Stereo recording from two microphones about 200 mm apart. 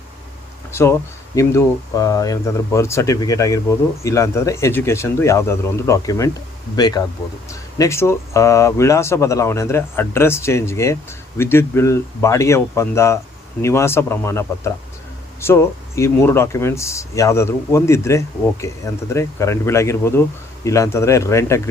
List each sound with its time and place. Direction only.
0.7 s speech: 10° left (ahead or behind)